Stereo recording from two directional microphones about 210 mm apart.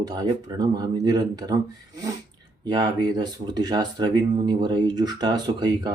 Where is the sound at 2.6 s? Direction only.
20° right (ahead or behind).